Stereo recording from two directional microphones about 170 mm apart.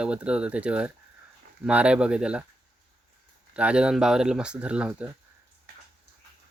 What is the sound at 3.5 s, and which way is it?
Speech, 5° right (ahead or behind).